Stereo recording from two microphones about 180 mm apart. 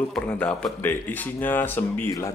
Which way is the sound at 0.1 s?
5° left (ahead or behind).